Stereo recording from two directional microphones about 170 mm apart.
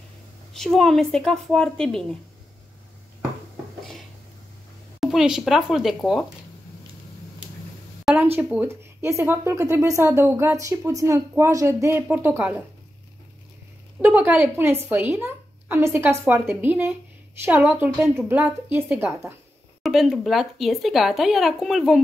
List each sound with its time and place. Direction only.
0.5 s speech: centre (ahead or behind)
5.0 s speech: centre (ahead or behind)
8.0 s a sound: centre (ahead or behind)
8.4 s speech: 10° right (ahead or behind)
14.0 s speech: 10° right (ahead or behind)
19.8 s speech: centre (ahead or behind)